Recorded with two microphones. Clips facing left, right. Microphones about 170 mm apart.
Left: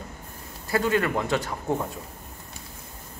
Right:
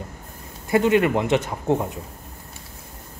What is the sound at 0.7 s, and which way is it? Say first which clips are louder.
Speech: right 6 dB; 20° right (ahead or behind).